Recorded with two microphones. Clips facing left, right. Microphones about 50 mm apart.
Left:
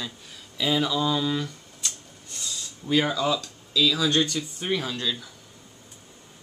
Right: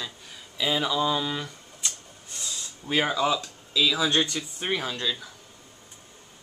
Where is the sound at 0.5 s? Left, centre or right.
Centre.